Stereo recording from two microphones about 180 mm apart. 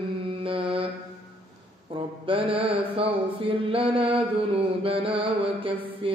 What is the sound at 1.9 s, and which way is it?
Mantra, 30° right (ahead or behind).